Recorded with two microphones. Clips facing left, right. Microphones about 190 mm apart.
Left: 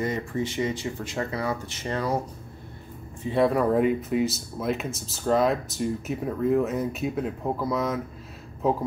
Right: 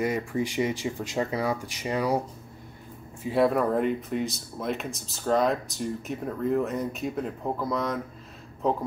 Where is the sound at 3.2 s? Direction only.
Centre (ahead or behind).